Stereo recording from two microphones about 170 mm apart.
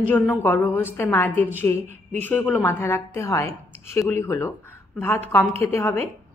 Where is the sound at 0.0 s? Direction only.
10° left (ahead or behind).